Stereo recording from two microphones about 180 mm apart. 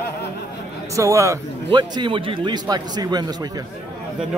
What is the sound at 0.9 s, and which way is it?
Speech, 15° right (ahead or behind).